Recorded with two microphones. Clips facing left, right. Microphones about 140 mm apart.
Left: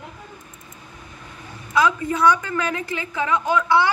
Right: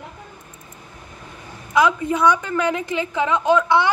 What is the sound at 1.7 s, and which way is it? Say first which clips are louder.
A woman's voice: right 2 dB; 20° right (ahead or behind).